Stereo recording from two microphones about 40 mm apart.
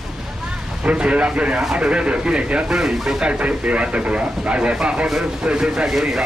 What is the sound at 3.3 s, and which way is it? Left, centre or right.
A man's voice, right.